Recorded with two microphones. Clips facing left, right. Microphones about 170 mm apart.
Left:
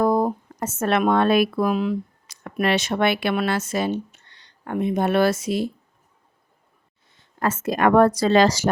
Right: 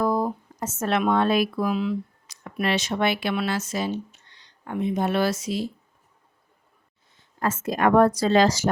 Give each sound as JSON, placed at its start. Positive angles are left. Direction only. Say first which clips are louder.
{"t": 0.0, "sound": "speech", "louder": "left 4 dB", "side_deg": 50}
{"t": 7.2, "sound": "a woman's voice", "louder": "left 2 dB", "side_deg": 70}